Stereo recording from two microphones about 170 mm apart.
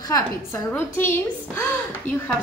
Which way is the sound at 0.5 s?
15° left (ahead or behind).